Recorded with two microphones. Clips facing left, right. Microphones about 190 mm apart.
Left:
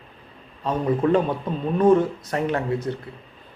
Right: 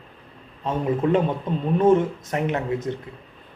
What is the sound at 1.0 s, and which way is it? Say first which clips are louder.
Speech: even; 20° right (ahead or behind).